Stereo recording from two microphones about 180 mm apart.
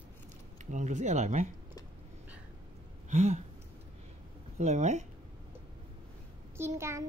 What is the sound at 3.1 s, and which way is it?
Speech, 40° right (ahead or behind).